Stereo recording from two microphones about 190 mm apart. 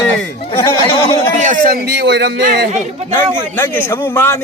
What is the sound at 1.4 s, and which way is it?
A man's voice, 45° right (ahead or behind).